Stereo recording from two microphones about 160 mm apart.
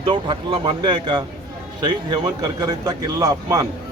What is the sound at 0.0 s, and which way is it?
A man's voice, 30° right (ahead or behind).